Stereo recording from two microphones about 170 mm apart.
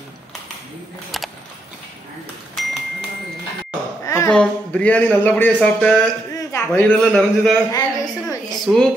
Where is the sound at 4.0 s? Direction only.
20° left (ahead or behind).